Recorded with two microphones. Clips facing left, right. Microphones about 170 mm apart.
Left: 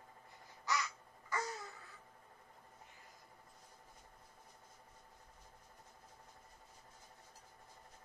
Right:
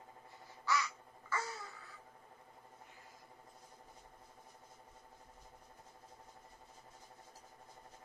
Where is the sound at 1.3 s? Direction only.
15° left (ahead or behind).